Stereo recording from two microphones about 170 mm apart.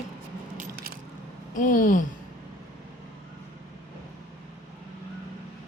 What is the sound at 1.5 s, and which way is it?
Speech, 50° left (ahead or behind).